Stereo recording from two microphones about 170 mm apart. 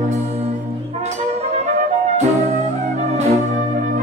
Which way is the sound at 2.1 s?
40° right (ahead or behind).